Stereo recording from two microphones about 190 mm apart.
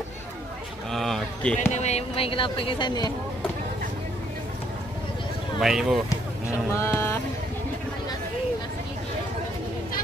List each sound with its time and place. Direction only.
0.9 s a sound: centre (ahead or behind)
1.6 s speech: 35° left (ahead or behind)
5.6 s speech: centre (ahead or behind)
6.7 s speech: 15° left (ahead or behind)